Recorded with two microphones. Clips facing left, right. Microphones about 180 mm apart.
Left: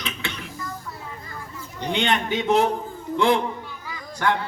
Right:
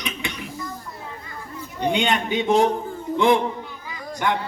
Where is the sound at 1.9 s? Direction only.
15° right (ahead or behind).